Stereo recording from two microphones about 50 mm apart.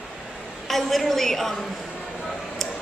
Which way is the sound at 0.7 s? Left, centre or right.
Centre.